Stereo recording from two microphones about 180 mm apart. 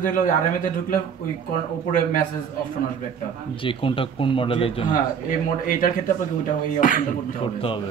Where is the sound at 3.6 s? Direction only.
30° left (ahead or behind).